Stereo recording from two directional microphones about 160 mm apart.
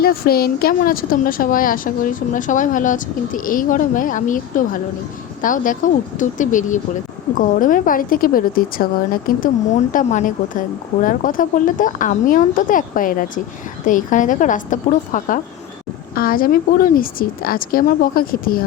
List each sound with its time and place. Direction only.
0.0 s a woman's voice: 70° left (ahead or behind)
9.9 s a woman's voice: 50° left (ahead or behind)
16.1 s a woman's voice: 65° left (ahead or behind)